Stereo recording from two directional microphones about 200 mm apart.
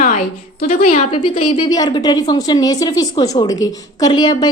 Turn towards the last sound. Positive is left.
turn(degrees=20)  # may be behind; listen again after turning